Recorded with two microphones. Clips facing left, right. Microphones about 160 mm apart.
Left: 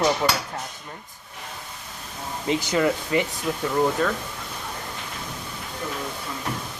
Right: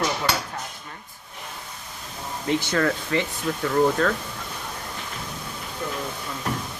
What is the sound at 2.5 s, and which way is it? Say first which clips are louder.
Speech: left 1 dB; 15° left (ahead or behind).